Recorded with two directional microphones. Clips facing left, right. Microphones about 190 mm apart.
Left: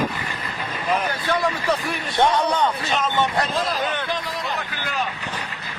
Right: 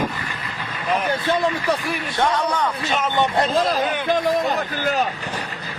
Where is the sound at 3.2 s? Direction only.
25° right (ahead or behind).